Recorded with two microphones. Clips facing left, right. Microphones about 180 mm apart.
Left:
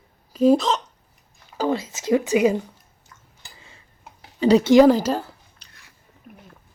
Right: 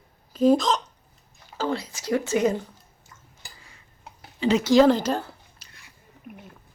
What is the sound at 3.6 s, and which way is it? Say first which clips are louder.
Tick-tock: left 3 dB; 25° left (ahead or behind).